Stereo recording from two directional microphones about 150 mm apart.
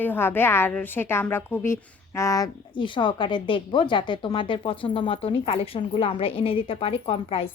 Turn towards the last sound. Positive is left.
turn(degrees=40)  # may be behind; listen again after turning